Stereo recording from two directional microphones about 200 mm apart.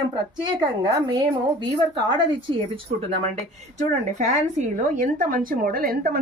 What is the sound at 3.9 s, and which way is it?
A woman's voice, 35° right (ahead or behind).